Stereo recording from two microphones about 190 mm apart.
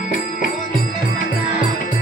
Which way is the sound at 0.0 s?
45° left (ahead or behind).